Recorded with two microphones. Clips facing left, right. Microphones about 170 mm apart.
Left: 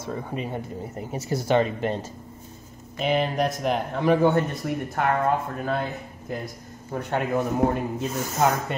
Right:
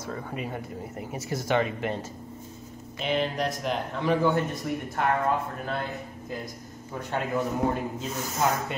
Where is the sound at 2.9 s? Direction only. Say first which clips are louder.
Left 4 dB; 50° left (ahead or behind).